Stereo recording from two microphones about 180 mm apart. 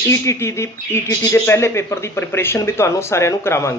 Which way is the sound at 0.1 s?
15° left (ahead or behind).